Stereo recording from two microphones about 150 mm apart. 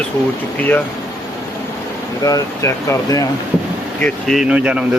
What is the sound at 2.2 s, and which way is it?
Speech, 25° left (ahead or behind).